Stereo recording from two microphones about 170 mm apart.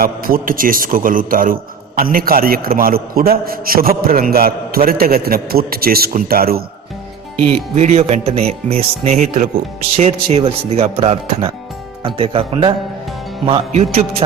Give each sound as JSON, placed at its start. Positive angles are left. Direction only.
{"t": 0.0, "sound": "a man's voice", "side_deg": -60}
{"t": 7.5, "sound": "speech", "side_deg": -40}
{"t": 13.7, "sound": "speech", "side_deg": -40}